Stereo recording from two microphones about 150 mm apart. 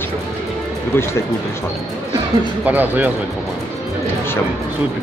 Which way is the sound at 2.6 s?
10° right (ahead or behind).